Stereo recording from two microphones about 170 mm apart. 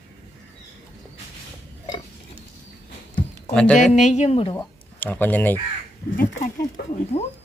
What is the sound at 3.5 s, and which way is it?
Speech, 5° left (ahead or behind).